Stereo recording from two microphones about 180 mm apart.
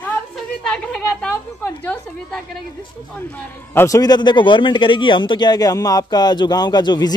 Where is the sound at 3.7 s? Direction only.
15° left (ahead or behind).